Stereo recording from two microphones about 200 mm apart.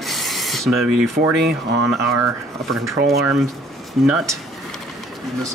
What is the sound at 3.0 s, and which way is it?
Speech, 50° right (ahead or behind).